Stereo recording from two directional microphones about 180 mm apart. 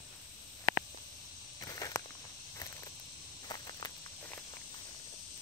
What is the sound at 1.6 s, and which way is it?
Walk, 20° left (ahead or behind).